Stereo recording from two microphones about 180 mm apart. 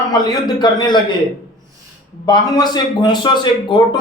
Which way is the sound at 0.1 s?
25° left (ahead or behind).